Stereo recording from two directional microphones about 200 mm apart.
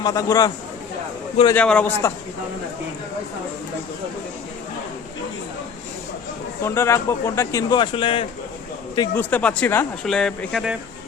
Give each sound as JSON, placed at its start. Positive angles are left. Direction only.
{"t": 0.0, "sound": "speech", "side_deg": 15}
{"t": 1.5, "sound": "speech", "side_deg": 5}
{"t": 6.6, "sound": "speech", "side_deg": 15}
{"t": 9.0, "sound": "speech", "side_deg": 10}